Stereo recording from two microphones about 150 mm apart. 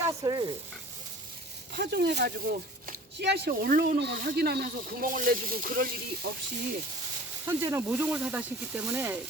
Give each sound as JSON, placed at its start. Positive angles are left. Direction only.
{"t": 0.0, "sound": "stir", "side_deg": -25}
{"t": 1.7, "sound": "speech", "side_deg": -90}
{"t": 7.4, "sound": "speech", "side_deg": -15}